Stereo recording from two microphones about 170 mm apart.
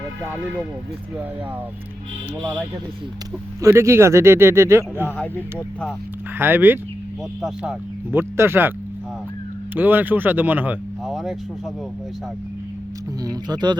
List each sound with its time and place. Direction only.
2.4 s speech: 10° right (ahead or behind)
5.1 s speech: 10° left (ahead or behind)
6.4 s speech: 10° right (ahead or behind)
9.7 s speech: 10° right (ahead or behind)
11.0 s a sound: centre (ahead or behind)
13.2 s speech: 25° right (ahead or behind)